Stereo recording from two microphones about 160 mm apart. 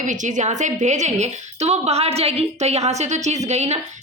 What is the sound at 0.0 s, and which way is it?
A woman's voice, 50° right (ahead or behind).